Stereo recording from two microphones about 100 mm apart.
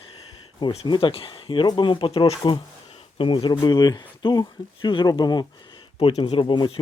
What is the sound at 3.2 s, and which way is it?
Speech, 50° left (ahead or behind).